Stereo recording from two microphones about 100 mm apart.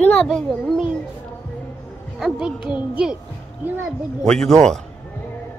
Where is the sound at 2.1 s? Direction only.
5° right (ahead or behind).